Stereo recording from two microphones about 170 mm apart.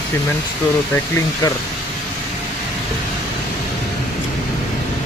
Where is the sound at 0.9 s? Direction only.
15° left (ahead or behind).